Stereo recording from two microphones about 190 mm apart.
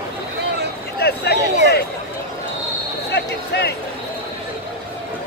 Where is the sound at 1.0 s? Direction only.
60° left (ahead or behind).